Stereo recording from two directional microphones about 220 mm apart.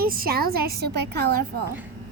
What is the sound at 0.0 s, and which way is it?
A child's voice, 40° right (ahead or behind).